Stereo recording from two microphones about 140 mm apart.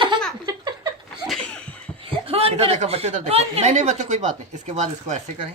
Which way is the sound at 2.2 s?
45° right (ahead or behind).